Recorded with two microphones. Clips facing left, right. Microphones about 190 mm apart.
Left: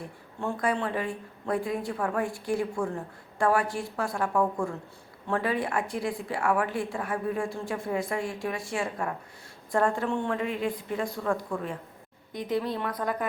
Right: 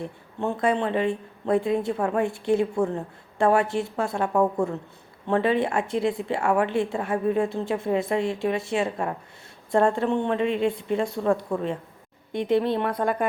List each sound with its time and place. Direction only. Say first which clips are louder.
0.3 s a woman's voice: right 5 dB; 25° right (ahead or behind)
12.9 s a woman's voice: right 6 dB; 25° right (ahead or behind)